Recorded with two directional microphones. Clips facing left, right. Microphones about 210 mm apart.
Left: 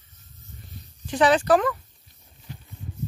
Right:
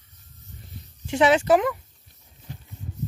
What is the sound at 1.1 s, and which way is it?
Speech, 25° right (ahead or behind).